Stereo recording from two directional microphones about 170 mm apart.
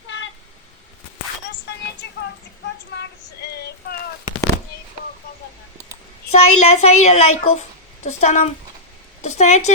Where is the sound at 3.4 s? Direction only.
70° left (ahead or behind).